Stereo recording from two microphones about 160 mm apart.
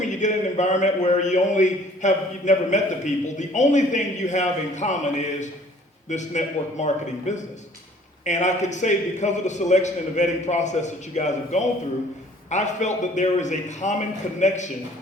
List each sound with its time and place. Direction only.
0.0 s a man's voice: 50° left (ahead or behind)